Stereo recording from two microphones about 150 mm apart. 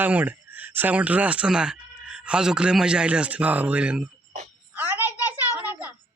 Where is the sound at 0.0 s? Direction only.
10° right (ahead or behind).